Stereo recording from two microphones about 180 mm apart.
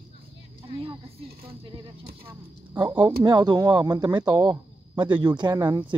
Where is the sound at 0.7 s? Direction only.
30° right (ahead or behind).